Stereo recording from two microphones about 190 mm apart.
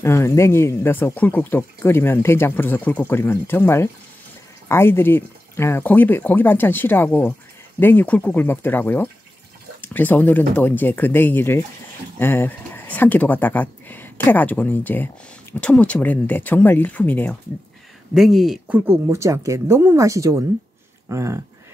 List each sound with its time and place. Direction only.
0.0 s speech: 15° left (ahead or behind)
18.1 s speech: centre (ahead or behind)